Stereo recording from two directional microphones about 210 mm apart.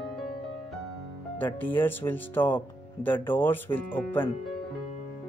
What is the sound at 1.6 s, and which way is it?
Speech, 10° left (ahead or behind).